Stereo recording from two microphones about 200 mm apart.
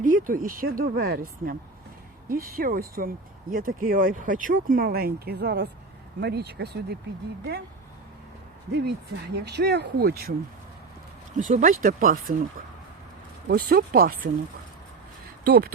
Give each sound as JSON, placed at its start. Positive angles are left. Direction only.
{"t": 0.0, "sound": "speech", "side_deg": -45}
{"t": 2.3, "sound": "speech", "side_deg": -45}
{"t": 8.7, "sound": "speech", "side_deg": -55}
{"t": 11.3, "sound": "speech", "side_deg": -40}
{"t": 15.4, "sound": "speech", "side_deg": -50}